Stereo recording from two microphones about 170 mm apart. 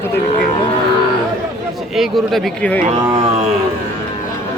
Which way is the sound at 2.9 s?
25° right (ahead or behind).